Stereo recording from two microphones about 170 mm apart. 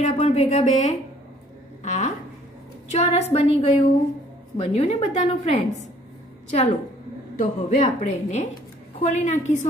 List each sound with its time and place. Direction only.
0.0 s a woman's voice: 35° left (ahead or behind)
1.8 s a sound: 45° left (ahead or behind)
2.9 s a woman's voice: 40° left (ahead or behind)